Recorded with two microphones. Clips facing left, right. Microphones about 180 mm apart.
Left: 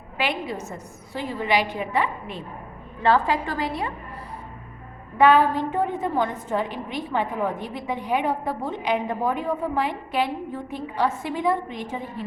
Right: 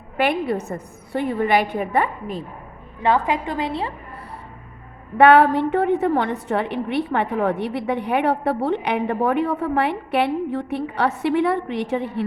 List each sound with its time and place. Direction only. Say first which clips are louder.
0.2 s a woman's voice: right 7 dB; 55° right (ahead or behind)
3.0 s a woman's voice: right 1 dB; 20° right (ahead or behind)
5.1 s a woman's voice: right 4 dB; 65° right (ahead or behind)